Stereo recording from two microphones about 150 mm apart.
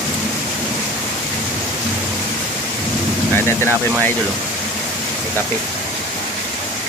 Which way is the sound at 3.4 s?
15° left (ahead or behind).